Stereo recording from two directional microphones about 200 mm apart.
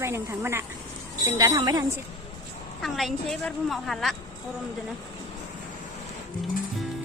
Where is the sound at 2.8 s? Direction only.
Centre (ahead or behind).